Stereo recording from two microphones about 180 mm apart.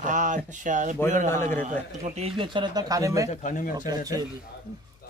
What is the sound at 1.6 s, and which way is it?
A man's voice, 45° right (ahead or behind).